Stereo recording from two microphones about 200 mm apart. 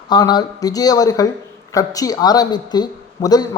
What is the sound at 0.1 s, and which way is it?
A woman's voice, 20° left (ahead or behind).